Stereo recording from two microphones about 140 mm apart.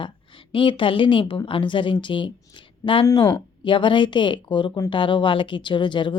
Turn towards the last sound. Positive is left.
turn(degrees=35)  # may be behind; listen again after turning